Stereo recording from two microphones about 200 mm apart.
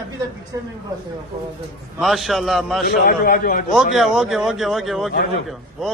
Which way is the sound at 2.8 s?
50° left (ahead or behind).